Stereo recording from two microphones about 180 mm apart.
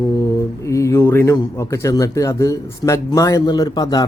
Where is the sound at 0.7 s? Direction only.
15° left (ahead or behind).